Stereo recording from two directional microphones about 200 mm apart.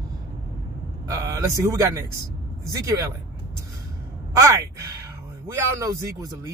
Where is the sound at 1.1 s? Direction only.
15° right (ahead or behind).